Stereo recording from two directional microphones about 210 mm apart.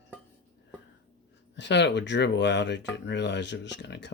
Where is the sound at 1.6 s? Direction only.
55° left (ahead or behind).